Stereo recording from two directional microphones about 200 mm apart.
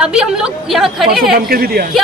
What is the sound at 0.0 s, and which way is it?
A woman's voice, 5° right (ahead or behind).